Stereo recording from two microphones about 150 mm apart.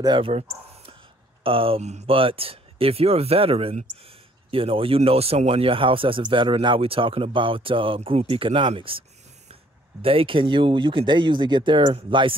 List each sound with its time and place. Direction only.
0.0 s speech: 35° right (ahead or behind)
10.0 s speech: 35° right (ahead or behind)